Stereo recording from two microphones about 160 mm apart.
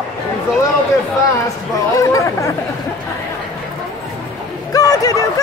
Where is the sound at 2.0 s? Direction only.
20° left (ahead or behind).